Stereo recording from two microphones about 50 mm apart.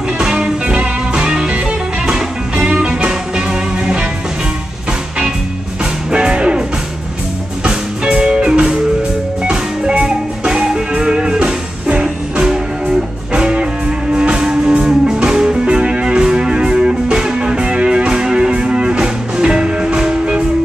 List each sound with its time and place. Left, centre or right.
0.2 s music: centre
6.1 s music: centre
7.6 s music: centre